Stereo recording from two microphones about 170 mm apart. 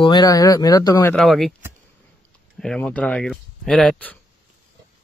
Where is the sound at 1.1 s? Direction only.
Centre (ahead or behind).